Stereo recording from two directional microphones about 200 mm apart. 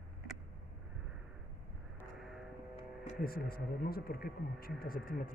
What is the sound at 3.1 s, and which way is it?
Speech, 50° left (ahead or behind).